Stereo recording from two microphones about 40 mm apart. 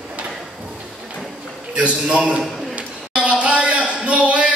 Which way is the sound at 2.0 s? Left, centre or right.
Right.